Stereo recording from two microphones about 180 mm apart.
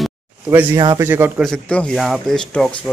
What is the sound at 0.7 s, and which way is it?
Speech, 20° right (ahead or behind).